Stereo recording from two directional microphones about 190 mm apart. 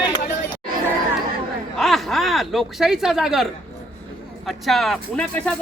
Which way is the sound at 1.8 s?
Centre (ahead or behind).